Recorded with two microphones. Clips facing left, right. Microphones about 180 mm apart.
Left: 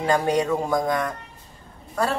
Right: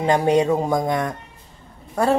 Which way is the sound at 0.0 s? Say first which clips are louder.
Right 4 dB; 20° right (ahead or behind).